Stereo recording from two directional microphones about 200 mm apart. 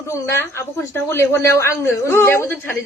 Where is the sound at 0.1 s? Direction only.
15° left (ahead or behind).